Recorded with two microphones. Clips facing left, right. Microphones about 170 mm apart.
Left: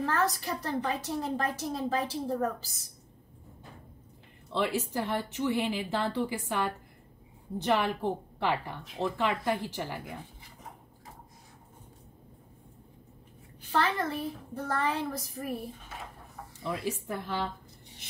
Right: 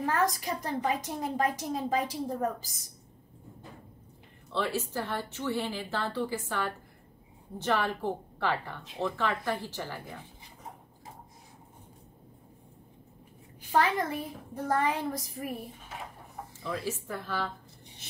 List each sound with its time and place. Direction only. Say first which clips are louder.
0.0 s a woman's voice: right 1 dB; 15° right (ahead or behind)
4.5 s a woman's voice: left 2 dB; 15° left (ahead or behind)
13.7 s a woman's voice: right 2 dB; 15° right (ahead or behind)
16.6 s a woman's voice: left 1 dB; 20° left (ahead or behind)